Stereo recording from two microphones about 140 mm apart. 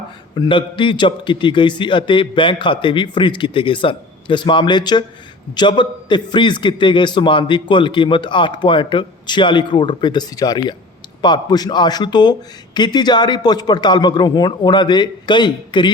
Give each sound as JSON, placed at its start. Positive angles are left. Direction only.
{"t": 0.3, "sound": "a man's voice", "side_deg": 35}